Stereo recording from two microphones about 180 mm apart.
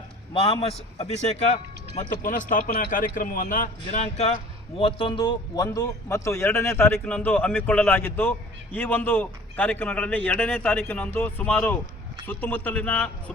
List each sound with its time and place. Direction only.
0.3 s a man's voice: 30° left (ahead or behind)
2.2 s a man's voice: 45° left (ahead or behind); by 13.3 s 5° left (ahead or behind)